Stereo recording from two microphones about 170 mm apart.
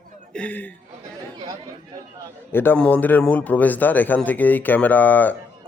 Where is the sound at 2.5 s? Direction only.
10° left (ahead or behind).